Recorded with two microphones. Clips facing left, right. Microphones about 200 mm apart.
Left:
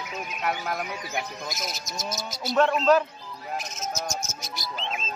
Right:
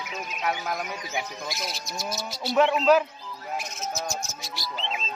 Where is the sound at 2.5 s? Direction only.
5° right (ahead or behind).